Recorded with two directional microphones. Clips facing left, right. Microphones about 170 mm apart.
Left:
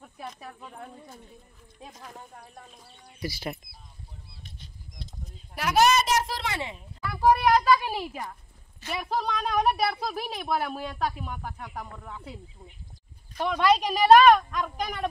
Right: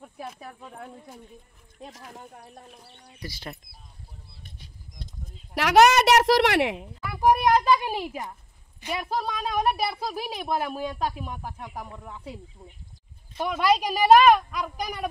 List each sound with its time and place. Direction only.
0.3 s a woman's voice: 5° right (ahead or behind)
3.2 s speech: 10° left (ahead or behind)
5.5 s a woman's voice: 75° right (ahead or behind)
7.0 s a woman's voice: 15° right (ahead or behind)
13.4 s a woman's voice: 5° right (ahead or behind)